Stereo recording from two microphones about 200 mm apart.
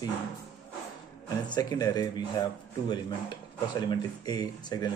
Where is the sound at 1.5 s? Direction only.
20° left (ahead or behind).